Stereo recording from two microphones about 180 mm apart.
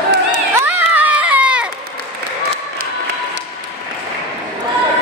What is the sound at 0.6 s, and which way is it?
Crowd, 10° right (ahead or behind).